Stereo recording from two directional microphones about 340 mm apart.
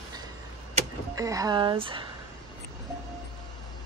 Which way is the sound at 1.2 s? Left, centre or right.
Centre.